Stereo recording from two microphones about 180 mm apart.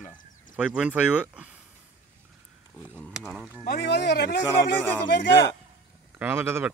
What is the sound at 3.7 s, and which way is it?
Speech, 70° left (ahead or behind).